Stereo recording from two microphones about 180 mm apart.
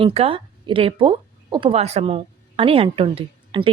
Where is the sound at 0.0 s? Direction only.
30° right (ahead or behind).